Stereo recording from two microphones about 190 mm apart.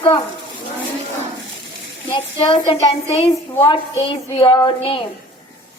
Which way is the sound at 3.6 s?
25° left (ahead or behind).